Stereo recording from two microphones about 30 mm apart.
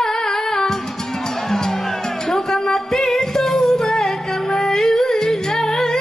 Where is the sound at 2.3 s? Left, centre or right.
Centre.